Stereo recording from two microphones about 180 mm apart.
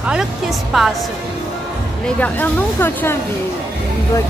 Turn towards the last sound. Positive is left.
turn(degrees=10)  # may be behind; listen again after turning